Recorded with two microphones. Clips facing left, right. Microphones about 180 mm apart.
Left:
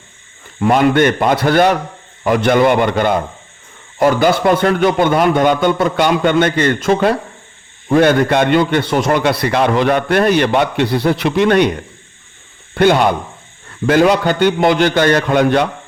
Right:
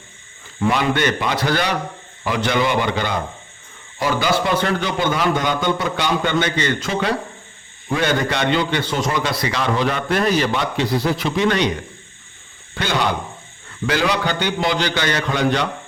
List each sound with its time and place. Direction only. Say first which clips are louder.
0.6 s a man's voice: left 7 dB; 50° left (ahead or behind)
12.7 s a man's voice: left 9 dB; 60° left (ahead or behind)